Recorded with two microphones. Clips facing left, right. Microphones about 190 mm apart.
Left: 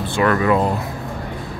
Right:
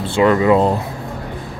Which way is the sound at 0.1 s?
20° right (ahead or behind).